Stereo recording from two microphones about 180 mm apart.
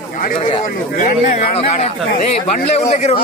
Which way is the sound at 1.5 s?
35° left (ahead or behind).